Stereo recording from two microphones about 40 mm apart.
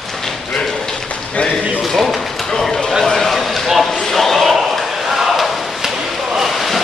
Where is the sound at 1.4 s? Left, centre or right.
Left.